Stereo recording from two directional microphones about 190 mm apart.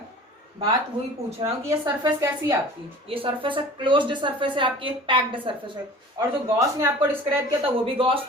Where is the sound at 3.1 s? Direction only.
30° right (ahead or behind).